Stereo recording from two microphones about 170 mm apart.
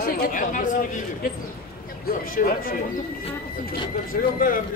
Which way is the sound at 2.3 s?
55° left (ahead or behind).